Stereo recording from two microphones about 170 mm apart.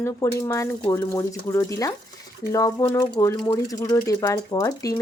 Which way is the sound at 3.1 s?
25° left (ahead or behind).